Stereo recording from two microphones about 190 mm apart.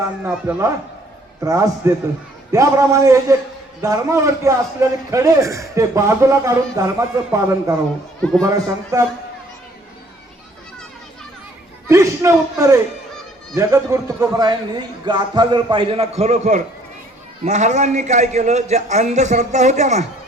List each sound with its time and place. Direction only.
1.4 s a man's voice: 15° right (ahead or behind)
11.9 s a man's voice: 15° right (ahead or behind); by 20.1 s 35° right (ahead or behind)